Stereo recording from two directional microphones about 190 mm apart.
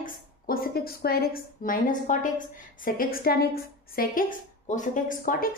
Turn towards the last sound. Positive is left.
turn(degrees=45)  # may be behind; listen again after turning